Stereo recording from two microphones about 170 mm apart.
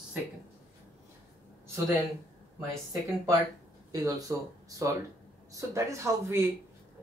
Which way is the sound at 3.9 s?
20° right (ahead or behind).